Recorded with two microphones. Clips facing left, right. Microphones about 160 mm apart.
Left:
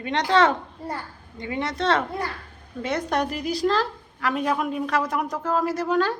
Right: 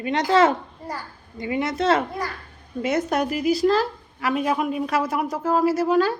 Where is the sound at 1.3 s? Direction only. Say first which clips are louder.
Right 4 dB; 10° right (ahead or behind).